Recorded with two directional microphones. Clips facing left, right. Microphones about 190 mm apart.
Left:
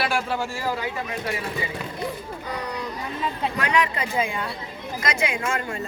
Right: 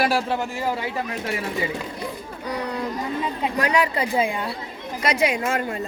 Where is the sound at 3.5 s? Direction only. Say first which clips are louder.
Right 3 dB; 35° right (ahead or behind).